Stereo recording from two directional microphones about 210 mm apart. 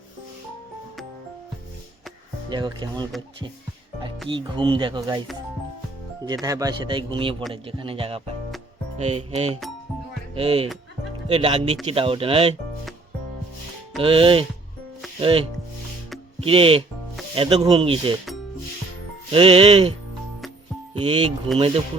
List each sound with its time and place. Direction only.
2.5 s a man's voice: 20° right (ahead or behind)
4.3 s a man's voice: 25° right (ahead or behind)
6.2 s a man's voice: 20° right (ahead or behind)
9.0 s music: 30° right (ahead or behind)
10.3 s a man's voice: 25° right (ahead or behind)
14.0 s a man's voice: 25° right (ahead or behind)
19.3 s a man's voice: 25° right (ahead or behind)
20.9 s speech: 25° right (ahead or behind)